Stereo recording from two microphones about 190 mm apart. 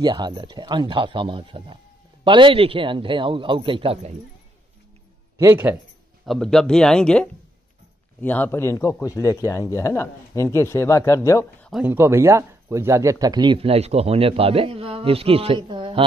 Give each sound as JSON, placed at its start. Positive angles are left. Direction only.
{"t": 0.0, "sound": "speech", "side_deg": -25}
{"t": 5.4, "sound": "speech", "side_deg": -10}
{"t": 6.2, "sound": "a man's voice", "side_deg": 0}
{"t": 11.7, "sound": "speech", "side_deg": -10}